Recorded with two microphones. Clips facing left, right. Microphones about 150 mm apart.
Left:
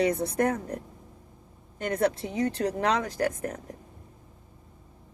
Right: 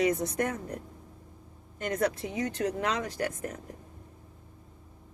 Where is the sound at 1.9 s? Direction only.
30° left (ahead or behind).